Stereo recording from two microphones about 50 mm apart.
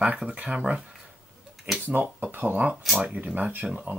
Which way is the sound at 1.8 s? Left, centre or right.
Right.